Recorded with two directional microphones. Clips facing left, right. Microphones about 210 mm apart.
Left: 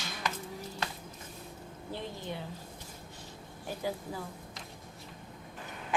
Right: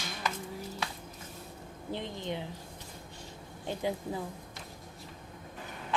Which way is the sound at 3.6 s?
25° right (ahead or behind).